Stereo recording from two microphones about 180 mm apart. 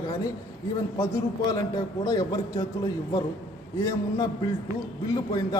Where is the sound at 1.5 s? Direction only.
20° left (ahead or behind).